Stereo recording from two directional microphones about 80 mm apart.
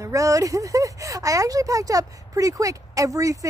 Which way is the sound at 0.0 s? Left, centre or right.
Right.